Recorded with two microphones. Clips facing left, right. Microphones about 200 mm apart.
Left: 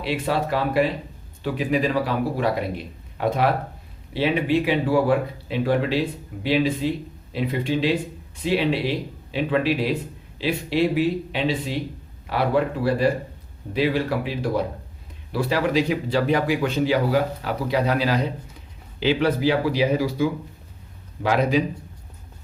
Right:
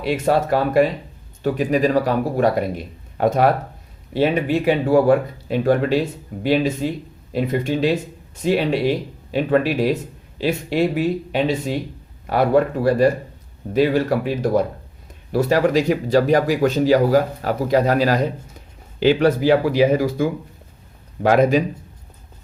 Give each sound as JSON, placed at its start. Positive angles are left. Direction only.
{"t": 0.0, "sound": "speech", "side_deg": -45}